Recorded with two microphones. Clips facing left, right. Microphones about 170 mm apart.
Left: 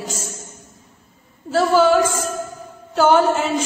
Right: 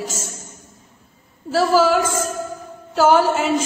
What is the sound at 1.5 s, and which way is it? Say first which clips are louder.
A woman's voice: left 1 dB; 5° right (ahead or behind).